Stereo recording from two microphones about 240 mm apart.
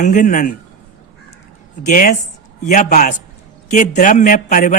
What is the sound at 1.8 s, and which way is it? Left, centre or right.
A woman's voice, left.